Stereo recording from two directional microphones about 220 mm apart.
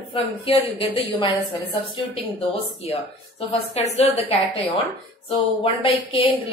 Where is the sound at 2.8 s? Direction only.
25° left (ahead or behind).